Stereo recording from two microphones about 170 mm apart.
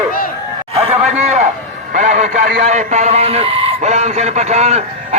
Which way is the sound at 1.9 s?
45° right (ahead or behind).